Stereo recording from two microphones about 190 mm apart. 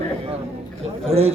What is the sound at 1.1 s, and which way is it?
Speech, 30° right (ahead or behind).